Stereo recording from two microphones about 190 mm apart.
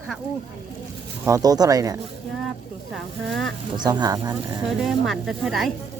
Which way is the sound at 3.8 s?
20° right (ahead or behind).